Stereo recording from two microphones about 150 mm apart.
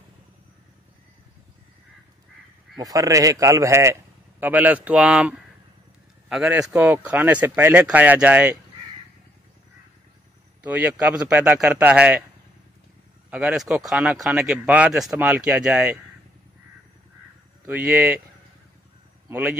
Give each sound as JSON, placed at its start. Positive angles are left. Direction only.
{"t": 2.8, "sound": "a man's voice", "side_deg": -25}
{"t": 10.6, "sound": "speech", "side_deg": -10}
{"t": 13.3, "sound": "speech", "side_deg": -5}
{"t": 17.6, "sound": "speech", "side_deg": -10}